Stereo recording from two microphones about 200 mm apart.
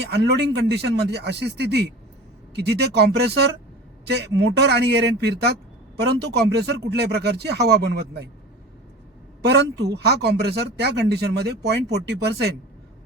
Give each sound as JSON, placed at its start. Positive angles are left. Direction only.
{"t": 0.0, "sound": "speech", "side_deg": -60}
{"t": 9.4, "sound": "speech", "side_deg": -55}